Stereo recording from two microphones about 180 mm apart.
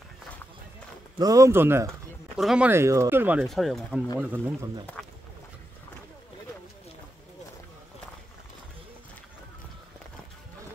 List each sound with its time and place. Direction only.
1.1 s speech: 20° right (ahead or behind); by 4.0 s centre (ahead or behind)
4.2 s speech: 10° right (ahead or behind)